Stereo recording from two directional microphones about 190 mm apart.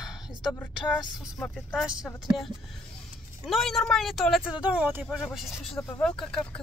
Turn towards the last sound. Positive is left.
turn(degrees=5)  # may be behind; listen again after turning